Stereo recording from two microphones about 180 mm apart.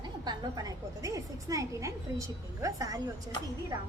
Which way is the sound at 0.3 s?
20° right (ahead or behind).